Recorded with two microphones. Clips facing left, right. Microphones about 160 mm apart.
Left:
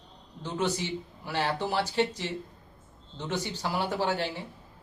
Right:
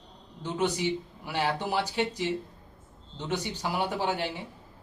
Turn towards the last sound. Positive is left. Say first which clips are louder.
# left 1 dB
turn(degrees=-15)  # may be behind; listen again after turning